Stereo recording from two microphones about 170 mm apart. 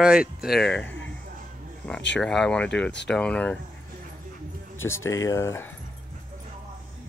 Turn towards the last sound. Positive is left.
turn(degrees=15)  # may be behind; listen again after turning